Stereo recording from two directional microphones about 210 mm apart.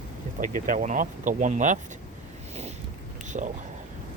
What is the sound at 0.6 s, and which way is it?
Speech, 35° right (ahead or behind).